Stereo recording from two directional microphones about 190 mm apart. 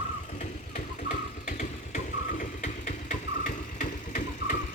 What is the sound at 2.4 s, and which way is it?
Engine, 40° left (ahead or behind).